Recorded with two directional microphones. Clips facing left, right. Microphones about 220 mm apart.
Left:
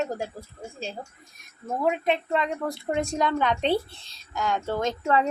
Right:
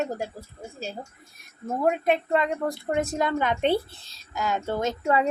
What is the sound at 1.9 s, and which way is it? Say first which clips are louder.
Speech: right 2 dB; 50° right (ahead or behind).